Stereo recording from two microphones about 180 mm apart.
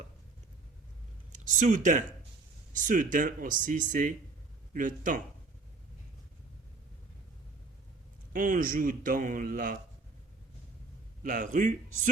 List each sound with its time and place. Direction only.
1.3 s speech: 45° right (ahead or behind)
8.3 s speech: 50° right (ahead or behind)
11.2 s speech: 45° right (ahead or behind)